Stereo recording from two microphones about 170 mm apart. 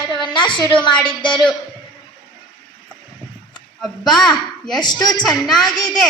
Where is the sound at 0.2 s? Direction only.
30° left (ahead or behind).